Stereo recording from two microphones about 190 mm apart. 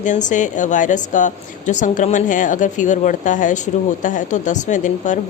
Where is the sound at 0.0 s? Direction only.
40° left (ahead or behind).